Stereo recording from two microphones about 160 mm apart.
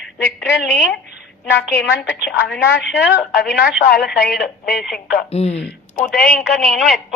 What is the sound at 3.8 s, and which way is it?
Speech, 75° left (ahead or behind).